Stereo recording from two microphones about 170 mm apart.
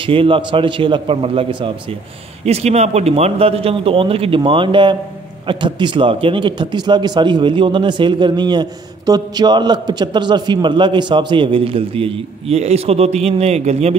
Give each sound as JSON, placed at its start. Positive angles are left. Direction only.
{"t": 0.0, "sound": "a man's voice", "side_deg": -30}